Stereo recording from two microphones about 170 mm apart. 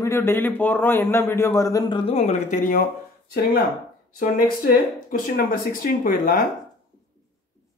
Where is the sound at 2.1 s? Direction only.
45° left (ahead or behind).